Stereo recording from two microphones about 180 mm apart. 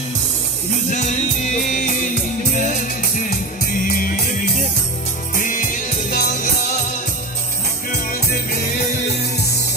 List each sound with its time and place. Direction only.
1.7 s music: 45° left (ahead or behind)
3.8 s music: 55° left (ahead or behind)
7.9 s music: 55° left (ahead or behind)